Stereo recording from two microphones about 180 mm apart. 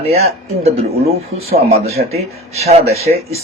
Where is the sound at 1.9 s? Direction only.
60° right (ahead or behind).